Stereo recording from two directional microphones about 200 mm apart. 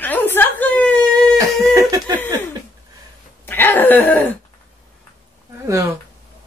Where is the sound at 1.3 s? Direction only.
15° right (ahead or behind).